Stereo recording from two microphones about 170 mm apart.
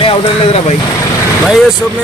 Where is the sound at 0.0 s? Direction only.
35° left (ahead or behind).